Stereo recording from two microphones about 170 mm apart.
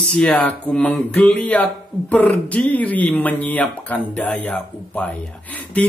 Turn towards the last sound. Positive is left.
turn(degrees=10)  # may be behind; listen again after turning